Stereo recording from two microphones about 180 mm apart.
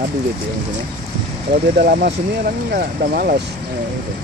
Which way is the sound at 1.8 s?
65° right (ahead or behind).